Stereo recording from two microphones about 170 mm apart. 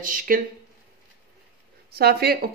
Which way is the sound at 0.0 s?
55° right (ahead or behind).